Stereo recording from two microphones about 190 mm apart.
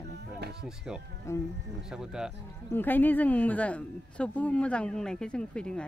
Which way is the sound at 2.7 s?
10° left (ahead or behind).